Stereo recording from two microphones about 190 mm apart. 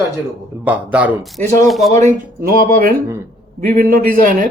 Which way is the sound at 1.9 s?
40° right (ahead or behind).